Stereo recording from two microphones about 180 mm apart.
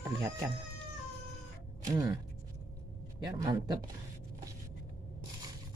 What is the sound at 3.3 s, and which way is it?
Speech, 20° right (ahead or behind).